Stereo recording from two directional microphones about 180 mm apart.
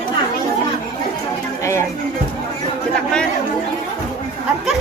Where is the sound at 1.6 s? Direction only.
15° left (ahead or behind).